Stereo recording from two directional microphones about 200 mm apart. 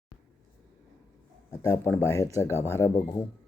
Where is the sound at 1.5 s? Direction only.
15° left (ahead or behind).